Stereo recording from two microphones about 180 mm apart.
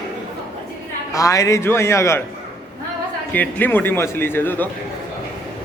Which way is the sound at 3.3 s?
10° left (ahead or behind).